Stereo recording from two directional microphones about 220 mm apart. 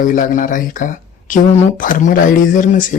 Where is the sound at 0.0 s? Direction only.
35° left (ahead or behind).